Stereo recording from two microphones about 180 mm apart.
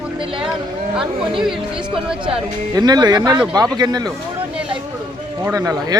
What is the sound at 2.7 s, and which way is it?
Speech, 20° right (ahead or behind).